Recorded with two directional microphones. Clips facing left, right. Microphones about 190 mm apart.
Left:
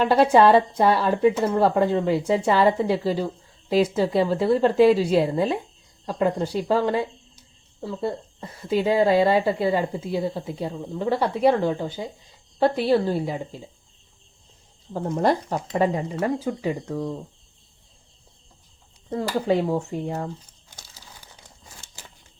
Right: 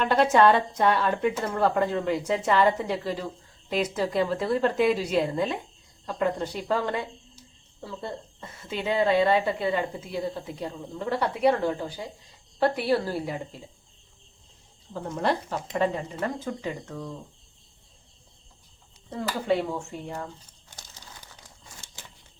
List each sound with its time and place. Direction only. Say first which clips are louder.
0.0 s a woman's voice: left 4 dB; 35° left (ahead or behind)
14.9 s a woman's voice: left 5 dB; 40° left (ahead or behind)
16.5 s speech: left 5 dB; 20° left (ahead or behind)
16.8 s a woman's voice: left 8 dB; 35° left (ahead or behind)
19.1 s a woman's voice: left 4 dB; 40° left (ahead or behind)